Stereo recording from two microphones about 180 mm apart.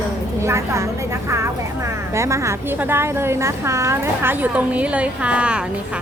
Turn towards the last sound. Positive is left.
turn(degrees=-5)  # may be behind; listen again after turning